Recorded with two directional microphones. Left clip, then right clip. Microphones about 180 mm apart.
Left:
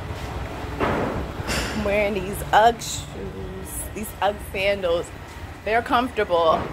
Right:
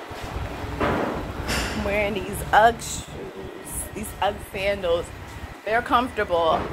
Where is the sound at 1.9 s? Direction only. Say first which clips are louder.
Left 3 dB; 25° left (ahead or behind).